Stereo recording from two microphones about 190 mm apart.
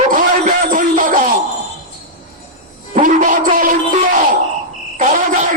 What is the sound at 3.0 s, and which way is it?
Music, 45° right (ahead or behind).